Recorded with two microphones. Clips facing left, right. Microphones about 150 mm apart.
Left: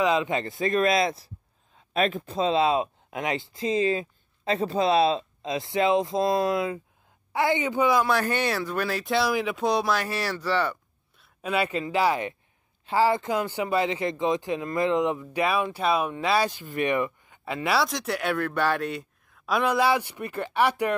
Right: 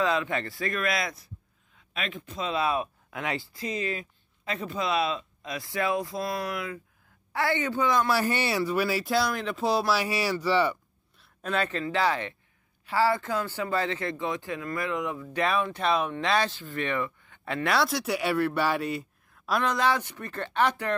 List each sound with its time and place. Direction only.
0.0 s speech: 20° left (ahead or behind)
1.8 s speech: 40° left (ahead or behind)
7.3 s speech: 15° left (ahead or behind)
8.1 s speech: 10° right (ahead or behind)
11.1 s a man's voice: 5° left (ahead or behind); by 15.2 s 25° left (ahead or behind)
15.3 s speech: 10° left (ahead or behind)
19.6 s speech: 10° left (ahead or behind)